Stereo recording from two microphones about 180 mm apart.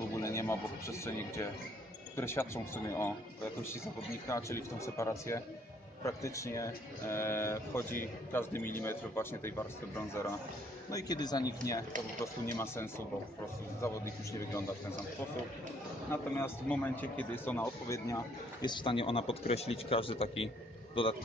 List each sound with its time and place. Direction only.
0.2 s speech: 15° left (ahead or behind)
10.9 s a man's voice: 20° left (ahead or behind)
16.1 s a man's voice: 10° left (ahead or behind); by 21.2 s 30° left (ahead or behind)